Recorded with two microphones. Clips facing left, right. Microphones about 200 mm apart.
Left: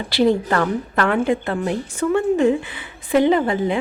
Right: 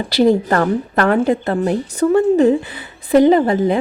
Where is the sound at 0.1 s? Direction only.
40° right (ahead or behind).